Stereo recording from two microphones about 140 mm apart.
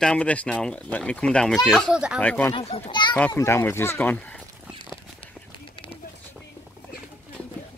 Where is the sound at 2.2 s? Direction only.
10° left (ahead or behind).